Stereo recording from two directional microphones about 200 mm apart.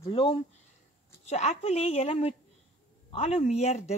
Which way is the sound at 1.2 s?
35° left (ahead or behind).